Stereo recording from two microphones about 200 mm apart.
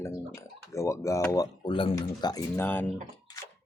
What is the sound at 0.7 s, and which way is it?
Speech, 15° left (ahead or behind).